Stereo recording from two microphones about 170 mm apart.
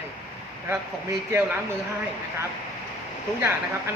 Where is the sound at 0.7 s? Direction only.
15° right (ahead or behind).